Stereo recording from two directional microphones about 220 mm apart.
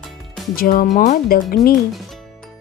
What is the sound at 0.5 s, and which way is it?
Speech, 40° left (ahead or behind).